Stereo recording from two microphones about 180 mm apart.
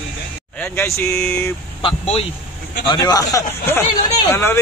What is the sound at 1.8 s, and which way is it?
Speech, 30° left (ahead or behind).